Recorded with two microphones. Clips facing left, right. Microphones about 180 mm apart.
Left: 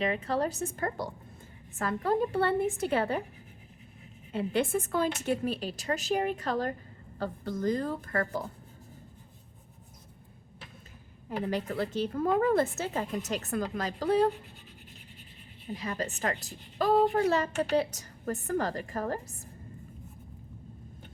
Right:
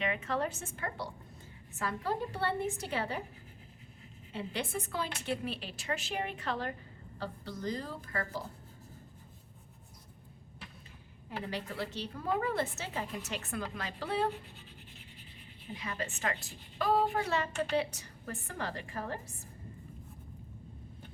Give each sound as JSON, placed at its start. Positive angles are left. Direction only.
{"t": 0.0, "sound": "a woman's voice", "side_deg": 35}
{"t": 4.3, "sound": "a woman's voice", "side_deg": 50}
{"t": 11.3, "sound": "a woman's voice", "side_deg": 45}
{"t": 15.7, "sound": "a woman's voice", "side_deg": 40}